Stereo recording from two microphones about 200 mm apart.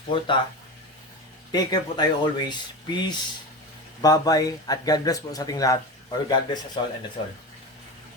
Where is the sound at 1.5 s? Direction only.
20° left (ahead or behind).